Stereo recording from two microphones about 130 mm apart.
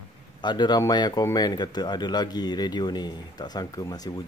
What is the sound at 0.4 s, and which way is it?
Speech, 35° left (ahead or behind).